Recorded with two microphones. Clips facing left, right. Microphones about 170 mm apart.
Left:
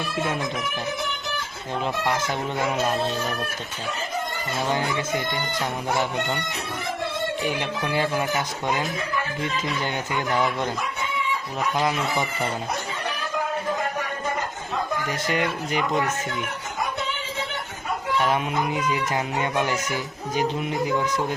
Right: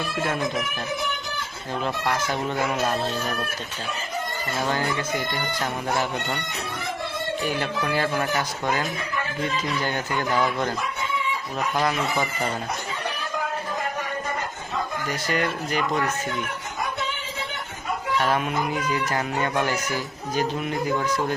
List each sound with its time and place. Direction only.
1.8 s a man's voice: 20° left (ahead or behind)
4.6 s a man's voice: 10° left (ahead or behind)
7.4 s speech: 20° left (ahead or behind)
9.8 s speech: 20° left (ahead or behind)
15.3 s speech: 20° left (ahead or behind)
18.2 s a man's voice: 20° left (ahead or behind)